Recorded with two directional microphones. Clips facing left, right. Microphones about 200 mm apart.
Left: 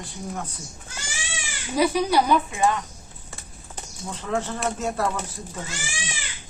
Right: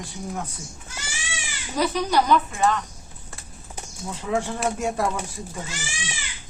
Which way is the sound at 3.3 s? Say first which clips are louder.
Even; 5° right (ahead or behind).